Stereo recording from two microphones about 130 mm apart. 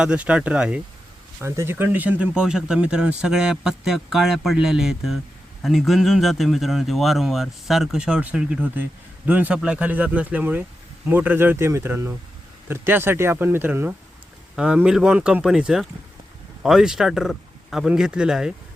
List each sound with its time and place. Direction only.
0.0 s speech: 10° right (ahead or behind)
1.4 s speech: 20° right (ahead or behind)